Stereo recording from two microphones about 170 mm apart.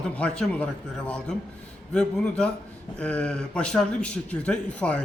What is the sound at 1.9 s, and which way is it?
A man's voice, 5° left (ahead or behind).